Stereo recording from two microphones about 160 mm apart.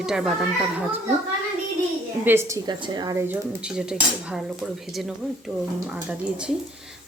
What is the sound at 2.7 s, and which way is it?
Speech, 25° right (ahead or behind).